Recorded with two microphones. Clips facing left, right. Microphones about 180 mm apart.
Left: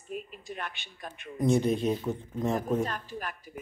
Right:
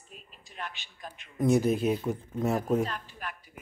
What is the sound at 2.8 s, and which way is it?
Speech, 45° left (ahead or behind).